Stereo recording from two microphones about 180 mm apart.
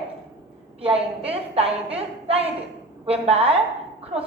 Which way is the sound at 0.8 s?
30° right (ahead or behind).